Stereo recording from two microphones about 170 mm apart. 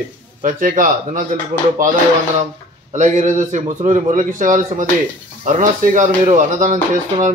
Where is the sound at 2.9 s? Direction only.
45° right (ahead or behind).